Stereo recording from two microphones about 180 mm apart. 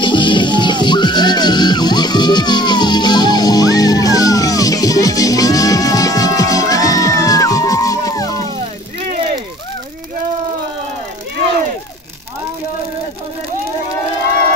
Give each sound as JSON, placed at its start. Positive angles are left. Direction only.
{"t": 0.0, "sound": "music", "side_deg": 25}